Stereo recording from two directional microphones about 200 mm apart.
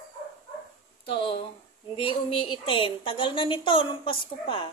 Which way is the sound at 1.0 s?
30° left (ahead or behind).